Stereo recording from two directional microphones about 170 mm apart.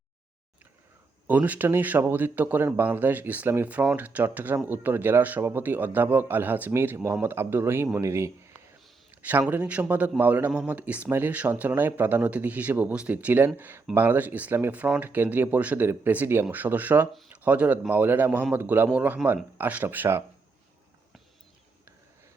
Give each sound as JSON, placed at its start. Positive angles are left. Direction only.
{"t": 1.3, "sound": "speech", "side_deg": -10}
{"t": 9.1, "sound": "a sound", "side_deg": -10}
{"t": 9.5, "sound": "speech", "side_deg": -10}